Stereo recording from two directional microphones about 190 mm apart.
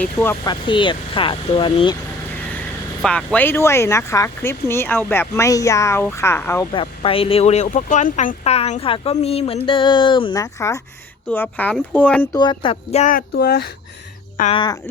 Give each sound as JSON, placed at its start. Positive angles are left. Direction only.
{"t": 0.0, "sound": "speech", "side_deg": 10}
{"t": 0.4, "sound": "speech", "side_deg": 25}
{"t": 3.0, "sound": "speech", "side_deg": 5}
{"t": 6.7, "sound": "speech", "side_deg": 30}
{"t": 11.3, "sound": "speech", "side_deg": 10}
{"t": 12.3, "sound": "speech", "side_deg": 25}
{"t": 13.1, "sound": "speech", "side_deg": 55}
{"t": 14.5, "sound": "speech", "side_deg": 25}